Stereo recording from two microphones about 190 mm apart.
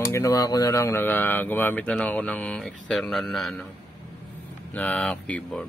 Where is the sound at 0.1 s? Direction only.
15° left (ahead or behind); by 3.6 s centre (ahead or behind).